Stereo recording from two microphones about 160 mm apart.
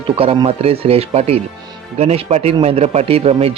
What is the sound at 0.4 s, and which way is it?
Speech, 40° right (ahead or behind).